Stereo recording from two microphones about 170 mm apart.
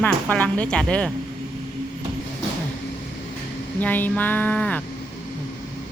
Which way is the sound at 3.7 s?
10° left (ahead or behind).